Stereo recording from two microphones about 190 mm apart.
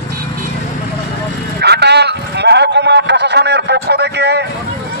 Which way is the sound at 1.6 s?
60° right (ahead or behind).